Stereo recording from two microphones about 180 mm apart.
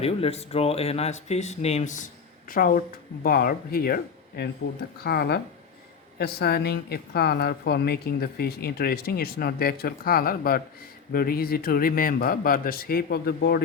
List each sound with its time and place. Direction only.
0.0 s a woman's voice: 35° left (ahead or behind); by 13.6 s 60° left (ahead or behind)